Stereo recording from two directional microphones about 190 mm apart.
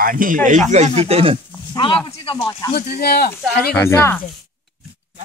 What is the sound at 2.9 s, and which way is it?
Speech, 60° left (ahead or behind).